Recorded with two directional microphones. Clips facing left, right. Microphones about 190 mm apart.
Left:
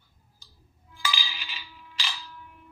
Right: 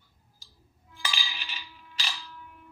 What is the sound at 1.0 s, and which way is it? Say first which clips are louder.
Music: left 3 dB; 45° right (ahead or behind).